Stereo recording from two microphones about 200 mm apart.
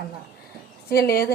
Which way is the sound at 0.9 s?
50° left (ahead or behind).